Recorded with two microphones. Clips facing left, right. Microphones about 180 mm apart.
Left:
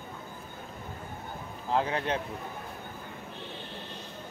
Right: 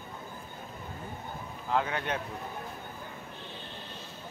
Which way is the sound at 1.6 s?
30° left (ahead or behind).